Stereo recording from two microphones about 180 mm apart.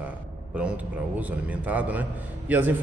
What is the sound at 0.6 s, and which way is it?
A man's voice, 5° right (ahead or behind).